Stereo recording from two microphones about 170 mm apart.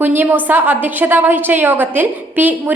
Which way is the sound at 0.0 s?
10° right (ahead or behind).